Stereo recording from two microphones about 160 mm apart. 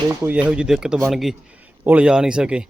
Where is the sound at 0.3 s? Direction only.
5° right (ahead or behind).